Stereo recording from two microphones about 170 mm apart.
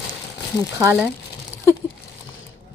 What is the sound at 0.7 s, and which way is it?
Speech, 15° right (ahead or behind).